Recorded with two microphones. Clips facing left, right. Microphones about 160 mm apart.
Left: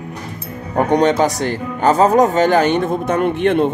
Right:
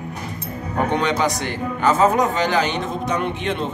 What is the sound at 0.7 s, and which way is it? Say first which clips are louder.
Speech: left 7 dB; 45° left (ahead or behind).